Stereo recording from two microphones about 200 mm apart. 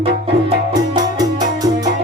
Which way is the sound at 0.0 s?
30° right (ahead or behind).